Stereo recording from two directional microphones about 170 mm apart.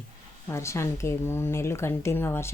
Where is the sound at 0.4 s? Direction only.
15° left (ahead or behind).